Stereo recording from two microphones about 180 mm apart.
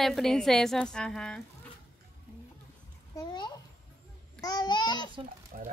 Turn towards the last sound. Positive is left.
turn(degrees=-45)  # may be behind; listen again after turning